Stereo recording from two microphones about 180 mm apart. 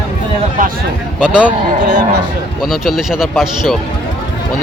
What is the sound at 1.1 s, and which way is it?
Speech, 5° right (ahead or behind).